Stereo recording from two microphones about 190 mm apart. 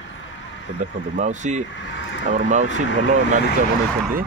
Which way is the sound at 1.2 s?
40° right (ahead or behind).